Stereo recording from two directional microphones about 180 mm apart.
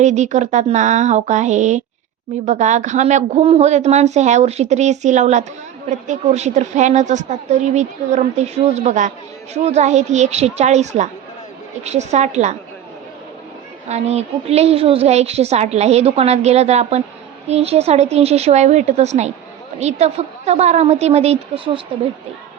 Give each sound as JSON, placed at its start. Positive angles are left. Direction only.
{"t": 0.0, "sound": "a woman's voice", "side_deg": -40}
{"t": 13.8, "sound": "a woman's voice", "side_deg": -40}